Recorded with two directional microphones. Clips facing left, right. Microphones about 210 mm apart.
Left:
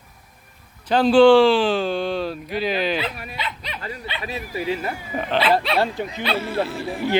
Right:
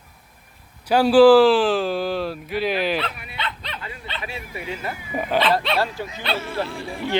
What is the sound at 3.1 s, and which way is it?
Speech, 40° left (ahead or behind).